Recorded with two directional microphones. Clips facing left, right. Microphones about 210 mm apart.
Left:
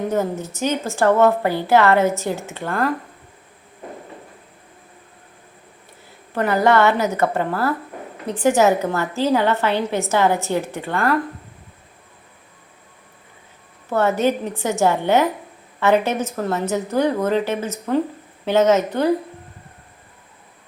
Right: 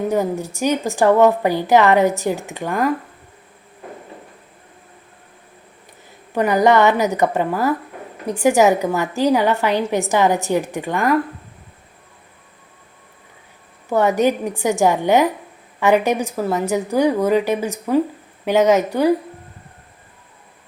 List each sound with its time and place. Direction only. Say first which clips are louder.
0.1 s a woman's voice: right 2 dB; 15° right (ahead or behind)
6.3 s a woman's voice: right 2 dB; 15° right (ahead or behind)
13.9 s a woman's voice: right 2 dB; 15° right (ahead or behind)